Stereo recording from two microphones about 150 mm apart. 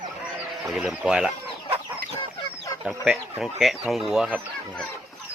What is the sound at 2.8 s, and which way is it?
Speech, 5° right (ahead or behind).